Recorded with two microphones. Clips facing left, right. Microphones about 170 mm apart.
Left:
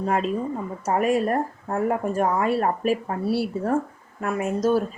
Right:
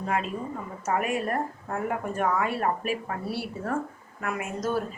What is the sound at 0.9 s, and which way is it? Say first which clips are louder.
Speech: left 6 dB; 35° left (ahead or behind).